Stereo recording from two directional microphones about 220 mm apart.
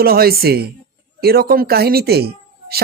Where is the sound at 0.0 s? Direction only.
45° right (ahead or behind).